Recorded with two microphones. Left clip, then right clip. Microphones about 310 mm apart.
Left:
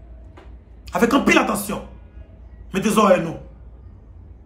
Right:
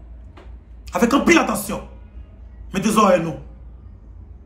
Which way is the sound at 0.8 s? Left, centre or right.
Centre.